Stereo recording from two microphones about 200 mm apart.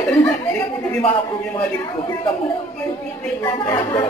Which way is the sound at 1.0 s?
25° left (ahead or behind).